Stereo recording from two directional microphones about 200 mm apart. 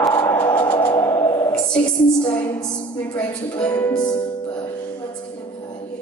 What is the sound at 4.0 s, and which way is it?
Music, 20° left (ahead or behind).